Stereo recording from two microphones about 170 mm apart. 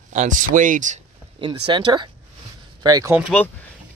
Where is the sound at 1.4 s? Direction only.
30° right (ahead or behind).